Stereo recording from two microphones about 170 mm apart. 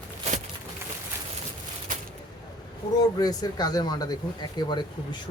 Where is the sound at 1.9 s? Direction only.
50° right (ahead or behind).